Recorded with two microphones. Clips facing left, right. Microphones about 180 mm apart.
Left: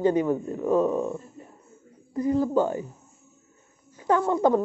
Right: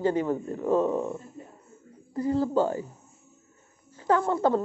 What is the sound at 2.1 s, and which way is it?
Speech, 15° left (ahead or behind).